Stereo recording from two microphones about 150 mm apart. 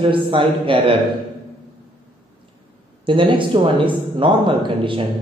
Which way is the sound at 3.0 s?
35° right (ahead or behind).